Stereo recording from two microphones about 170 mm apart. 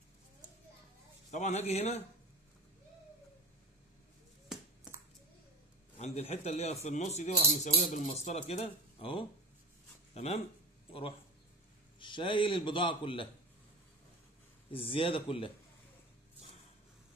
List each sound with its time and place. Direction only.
1.3 s speech: 40° left (ahead or behind)
4.5 s a sound: centre (ahead or behind)
5.9 s a man's voice: 40° left (ahead or behind)
14.7 s speech: 30° left (ahead or behind)